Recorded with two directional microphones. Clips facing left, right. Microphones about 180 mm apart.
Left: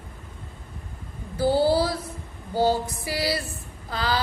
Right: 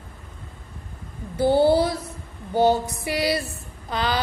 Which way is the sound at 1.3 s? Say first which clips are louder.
Right 3 dB; 25° right (ahead or behind).